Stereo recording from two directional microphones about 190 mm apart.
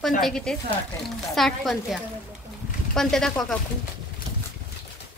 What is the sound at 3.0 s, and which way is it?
Speech, 5° left (ahead or behind).